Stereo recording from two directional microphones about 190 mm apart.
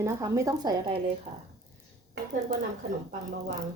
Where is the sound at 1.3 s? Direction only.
35° right (ahead or behind).